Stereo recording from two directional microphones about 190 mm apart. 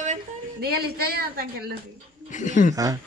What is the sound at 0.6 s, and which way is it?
Speech, 55° right (ahead or behind).